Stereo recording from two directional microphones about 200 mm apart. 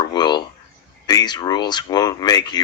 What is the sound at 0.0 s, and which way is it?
Speech, 20° left (ahead or behind).